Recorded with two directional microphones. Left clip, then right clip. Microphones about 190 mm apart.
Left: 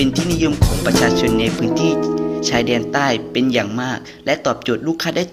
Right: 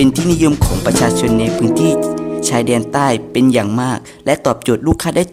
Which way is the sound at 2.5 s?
45° right (ahead or behind).